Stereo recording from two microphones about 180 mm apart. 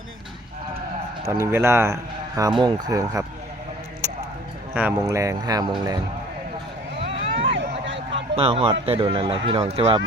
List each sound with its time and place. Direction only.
1.3 s a man's voice: 15° right (ahead or behind)
4.0 s a sound: 15° right (ahead or behind)
4.7 s speech: 10° right (ahead or behind)
7.0 s vehicle: 35° right (ahead or behind)
8.4 s speech: 30° right (ahead or behind)